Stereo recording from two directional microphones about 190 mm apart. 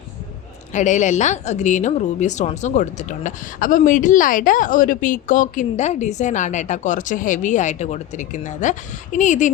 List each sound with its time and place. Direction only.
0.7 s speech: 40° left (ahead or behind)